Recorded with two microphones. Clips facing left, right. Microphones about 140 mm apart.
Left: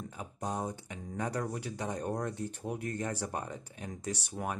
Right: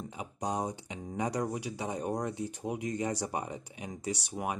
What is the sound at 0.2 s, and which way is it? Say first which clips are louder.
Speech: right 3 dB; 15° right (ahead or behind).